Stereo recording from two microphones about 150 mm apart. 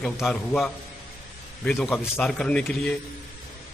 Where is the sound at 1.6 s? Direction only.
5° left (ahead or behind).